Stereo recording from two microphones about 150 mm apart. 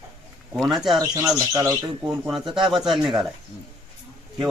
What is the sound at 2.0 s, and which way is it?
Speech, 5° right (ahead or behind).